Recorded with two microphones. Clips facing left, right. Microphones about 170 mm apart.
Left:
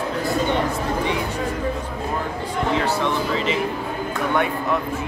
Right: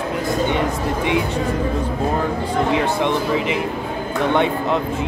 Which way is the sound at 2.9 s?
15° right (ahead or behind).